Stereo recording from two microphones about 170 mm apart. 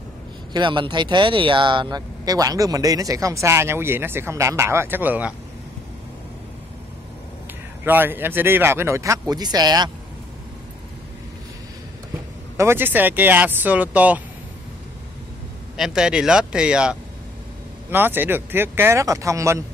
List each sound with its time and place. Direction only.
0.5 s speech: 25° right (ahead or behind); by 5.3 s 10° right (ahead or behind)
7.8 s speech: 10° right (ahead or behind)
12.5 s speech: 15° right (ahead or behind)
15.7 s speech: 5° right (ahead or behind)
17.9 s speech: 10° right (ahead or behind)